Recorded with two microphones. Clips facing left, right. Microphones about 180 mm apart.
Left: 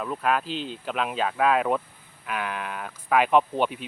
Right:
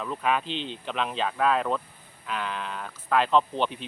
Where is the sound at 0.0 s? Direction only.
5° left (ahead or behind).